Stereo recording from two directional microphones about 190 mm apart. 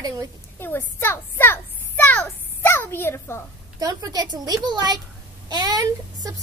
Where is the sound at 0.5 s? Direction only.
10° left (ahead or behind).